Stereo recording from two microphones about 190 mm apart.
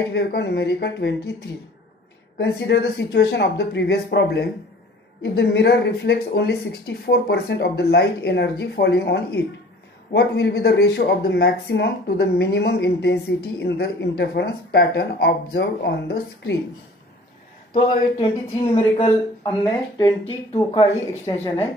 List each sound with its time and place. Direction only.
0.1 s speech: 60° left (ahead or behind)
2.3 s speech: 60° left (ahead or behind)
17.7 s speech: 25° left (ahead or behind)